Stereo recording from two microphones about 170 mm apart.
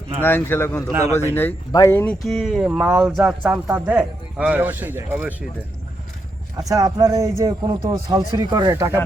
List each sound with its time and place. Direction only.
0.2 s speech: 10° left (ahead or behind)
2.2 s speech: centre (ahead or behind)
6.6 s a man's voice: 20° right (ahead or behind)